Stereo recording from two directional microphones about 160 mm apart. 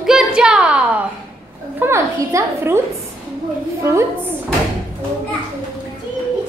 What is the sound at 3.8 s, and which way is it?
Speech, 15° right (ahead or behind).